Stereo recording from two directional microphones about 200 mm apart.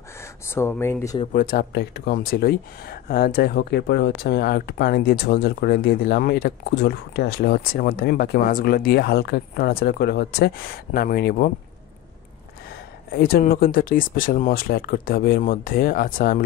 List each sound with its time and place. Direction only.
0.2 s speech: 10° left (ahead or behind)
1.3 s speech: 45° left (ahead or behind)
13.2 s speech: 50° left (ahead or behind)